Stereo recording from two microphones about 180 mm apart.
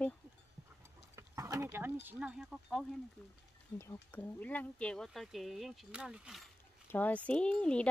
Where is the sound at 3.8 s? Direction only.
15° left (ahead or behind); by 6.5 s 5° right (ahead or behind).